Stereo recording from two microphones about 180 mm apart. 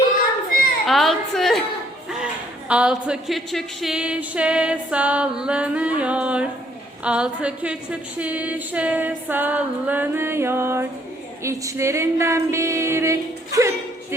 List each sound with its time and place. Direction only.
0.9 s a woman's voice: centre (ahead or behind); by 13.7 s 15° right (ahead or behind)